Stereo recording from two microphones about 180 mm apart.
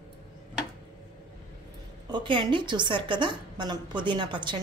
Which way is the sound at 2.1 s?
25° right (ahead or behind).